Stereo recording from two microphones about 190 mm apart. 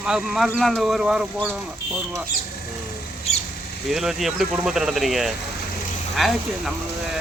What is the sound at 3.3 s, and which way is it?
Squawk, 35° left (ahead or behind).